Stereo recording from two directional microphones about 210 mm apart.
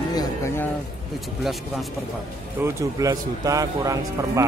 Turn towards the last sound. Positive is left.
turn(degrees=-15)  # may be behind; listen again after turning